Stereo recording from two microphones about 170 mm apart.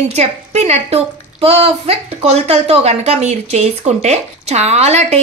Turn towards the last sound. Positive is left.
turn(degrees=-40)  # may be behind; listen again after turning